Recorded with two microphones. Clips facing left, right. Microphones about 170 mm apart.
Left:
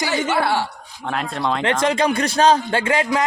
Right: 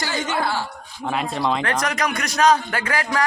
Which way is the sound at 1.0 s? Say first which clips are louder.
Even; centre (ahead or behind).